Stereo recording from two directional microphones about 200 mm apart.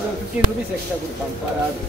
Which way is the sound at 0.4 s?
5° right (ahead or behind).